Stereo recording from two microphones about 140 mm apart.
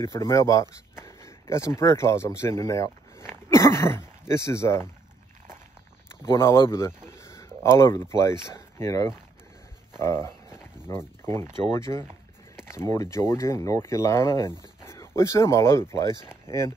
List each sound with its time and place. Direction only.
0.0 s speech: 20° left (ahead or behind)
6.2 s speech: 20° left (ahead or behind)
7.1 s a sound: 20° left (ahead or behind)
8.5 s speech: 20° left (ahead or behind)
9.9 s a sound: 20° left (ahead or behind)
11.7 s speech: 20° left (ahead or behind)